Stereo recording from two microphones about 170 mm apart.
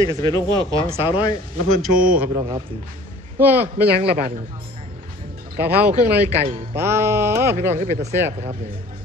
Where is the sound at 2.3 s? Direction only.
20° right (ahead or behind).